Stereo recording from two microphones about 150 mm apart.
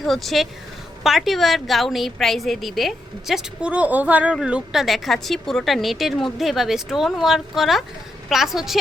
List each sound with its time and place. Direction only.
0.0 s a woman's voice: centre (ahead or behind)